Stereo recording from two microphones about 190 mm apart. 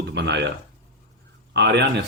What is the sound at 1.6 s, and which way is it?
Speech, 60° right (ahead or behind).